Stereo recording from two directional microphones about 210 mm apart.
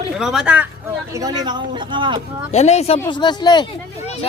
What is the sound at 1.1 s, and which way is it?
Speech, 20° right (ahead or behind).